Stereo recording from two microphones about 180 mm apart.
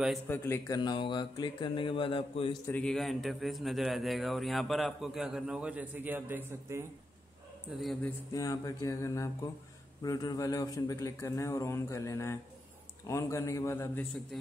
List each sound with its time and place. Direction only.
0.3 s speech: 15° left (ahead or behind)
2.6 s a man's voice: 10° left (ahead or behind); by 6.9 s 15° right (ahead or behind)
7.6 s a man's voice: centre (ahead or behind)
8.3 s a man's voice: 20° left (ahead or behind)
14.3 s a man's voice: centre (ahead or behind)